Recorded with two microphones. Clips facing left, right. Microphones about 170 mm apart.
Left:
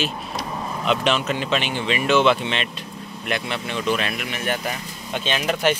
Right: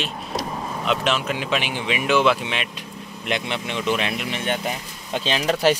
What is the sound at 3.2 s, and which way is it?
Speech, 20° right (ahead or behind).